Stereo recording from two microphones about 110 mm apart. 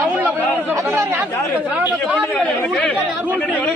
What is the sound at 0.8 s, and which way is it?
Speech, 20° right (ahead or behind).